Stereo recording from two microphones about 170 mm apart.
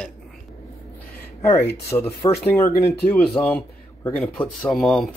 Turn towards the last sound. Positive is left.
turn(degrees=0)  # may be behind; listen again after turning